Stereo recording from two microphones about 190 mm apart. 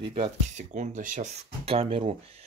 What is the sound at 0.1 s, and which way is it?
Speech, 35° right (ahead or behind).